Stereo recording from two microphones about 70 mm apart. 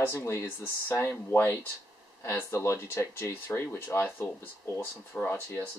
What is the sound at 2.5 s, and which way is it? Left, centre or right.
Speech, left.